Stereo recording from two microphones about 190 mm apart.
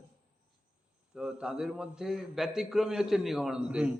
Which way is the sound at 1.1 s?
5° right (ahead or behind).